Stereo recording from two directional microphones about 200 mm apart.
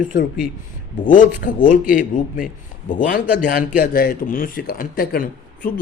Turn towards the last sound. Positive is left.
turn(degrees=45)  # may be behind; listen again after turning